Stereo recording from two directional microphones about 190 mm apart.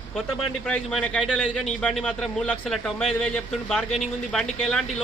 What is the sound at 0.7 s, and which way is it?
Speech, 5° left (ahead or behind).